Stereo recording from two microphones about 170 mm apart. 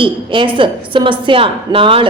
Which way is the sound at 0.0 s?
30° right (ahead or behind).